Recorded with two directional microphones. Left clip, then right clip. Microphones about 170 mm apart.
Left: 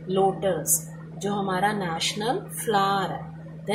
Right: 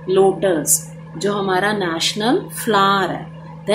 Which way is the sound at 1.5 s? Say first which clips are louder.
Right 5 dB; 40° right (ahead or behind).